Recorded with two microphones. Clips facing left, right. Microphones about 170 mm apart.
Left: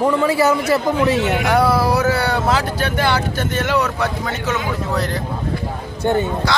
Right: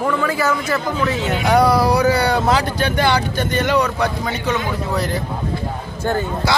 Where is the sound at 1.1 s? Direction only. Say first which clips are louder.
Left 3 dB; 65° left (ahead or behind).